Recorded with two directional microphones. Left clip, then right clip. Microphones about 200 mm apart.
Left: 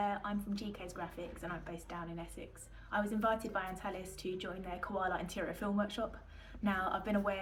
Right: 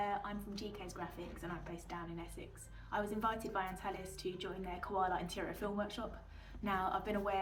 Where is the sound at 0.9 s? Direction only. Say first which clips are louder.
Left 3 dB; 25° left (ahead or behind).